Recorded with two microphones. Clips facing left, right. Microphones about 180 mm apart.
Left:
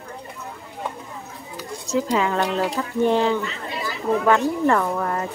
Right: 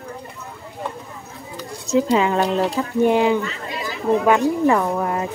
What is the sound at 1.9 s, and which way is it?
Speech, 20° right (ahead or behind).